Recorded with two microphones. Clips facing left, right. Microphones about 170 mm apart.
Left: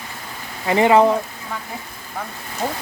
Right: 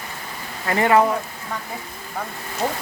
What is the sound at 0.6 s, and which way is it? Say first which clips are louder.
Speech: left 3 dB; 20° left (ahead or behind).